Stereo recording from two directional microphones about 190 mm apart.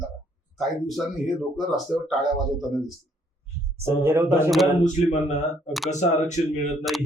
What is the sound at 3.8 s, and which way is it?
Speech, 15° right (ahead or behind).